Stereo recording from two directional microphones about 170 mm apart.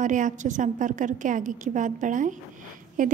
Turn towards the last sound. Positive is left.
turn(degrees=-50)  # may be behind; listen again after turning